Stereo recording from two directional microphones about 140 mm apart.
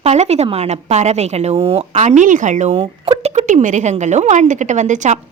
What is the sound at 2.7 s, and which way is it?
A woman's voice, 40° right (ahead or behind).